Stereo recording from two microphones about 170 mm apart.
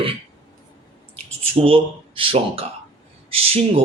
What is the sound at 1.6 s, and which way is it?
Speech, 35° right (ahead or behind).